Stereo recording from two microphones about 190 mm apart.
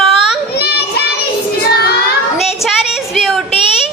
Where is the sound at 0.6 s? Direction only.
60° left (ahead or behind).